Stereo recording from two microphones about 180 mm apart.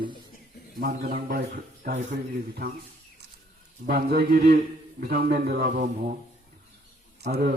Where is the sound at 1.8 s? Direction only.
40° right (ahead or behind).